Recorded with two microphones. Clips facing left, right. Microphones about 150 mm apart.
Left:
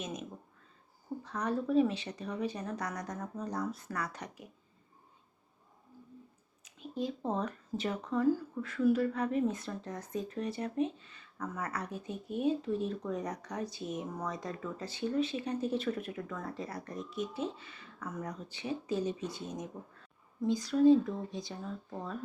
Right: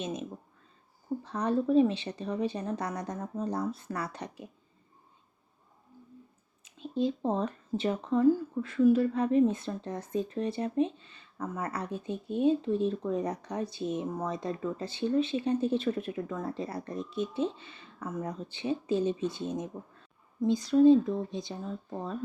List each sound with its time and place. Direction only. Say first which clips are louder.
0.0 s a sound: right 5 dB; 30° right (ahead or behind)
1.2 s speech: right 5 dB; 30° right (ahead or behind)
6.7 s speech: right 7 dB; 25° right (ahead or behind)